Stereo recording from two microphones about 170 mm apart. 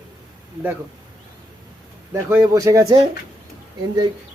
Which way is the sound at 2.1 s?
15° right (ahead or behind).